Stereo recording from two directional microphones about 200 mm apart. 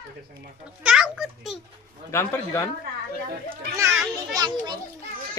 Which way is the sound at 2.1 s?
15° left (ahead or behind).